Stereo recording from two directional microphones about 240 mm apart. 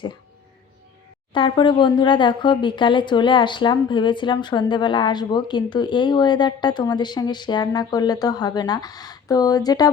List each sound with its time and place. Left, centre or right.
1.3 s speech: left